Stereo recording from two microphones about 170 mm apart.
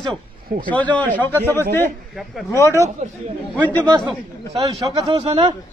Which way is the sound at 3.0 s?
45° right (ahead or behind).